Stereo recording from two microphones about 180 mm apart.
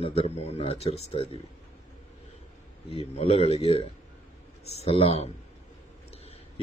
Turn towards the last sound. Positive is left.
turn(degrees=35)  # may be behind; listen again after turning